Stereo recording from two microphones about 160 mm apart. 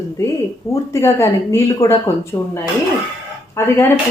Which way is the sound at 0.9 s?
15° left (ahead or behind).